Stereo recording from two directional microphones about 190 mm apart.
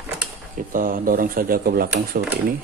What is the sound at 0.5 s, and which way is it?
Speech, 45° right (ahead or behind).